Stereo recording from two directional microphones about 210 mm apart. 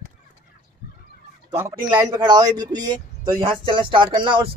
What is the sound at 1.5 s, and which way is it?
Speech, 15° right (ahead or behind).